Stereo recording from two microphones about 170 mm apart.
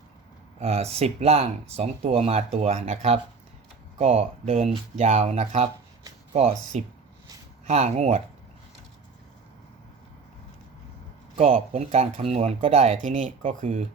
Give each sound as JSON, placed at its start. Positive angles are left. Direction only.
{"t": 0.6, "sound": "speech", "side_deg": -35}
{"t": 11.3, "sound": "speech", "side_deg": -40}